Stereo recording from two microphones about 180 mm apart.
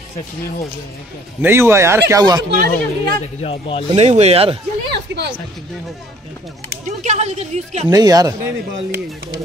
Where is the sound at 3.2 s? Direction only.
35° left (ahead or behind).